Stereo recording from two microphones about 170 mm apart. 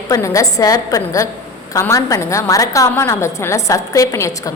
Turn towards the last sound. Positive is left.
turn(degrees=20)  # may be behind; listen again after turning